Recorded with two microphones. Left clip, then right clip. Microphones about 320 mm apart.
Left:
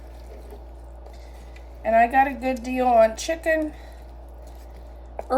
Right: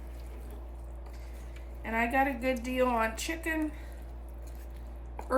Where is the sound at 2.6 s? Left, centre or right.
Centre.